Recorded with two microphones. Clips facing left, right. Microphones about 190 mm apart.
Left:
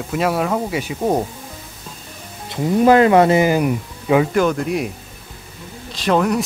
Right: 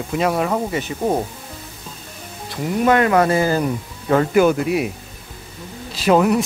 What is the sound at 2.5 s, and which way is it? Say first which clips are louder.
Speech: left 4 dB; 25° left (ahead or behind).